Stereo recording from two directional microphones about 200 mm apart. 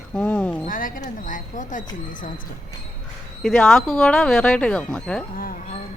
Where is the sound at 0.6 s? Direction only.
45° left (ahead or behind).